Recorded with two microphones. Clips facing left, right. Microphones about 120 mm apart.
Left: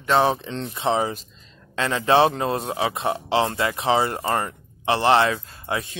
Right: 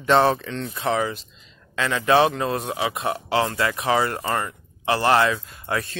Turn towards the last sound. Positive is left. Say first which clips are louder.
# right 1 dB
turn(degrees=20)  # may be behind; listen again after turning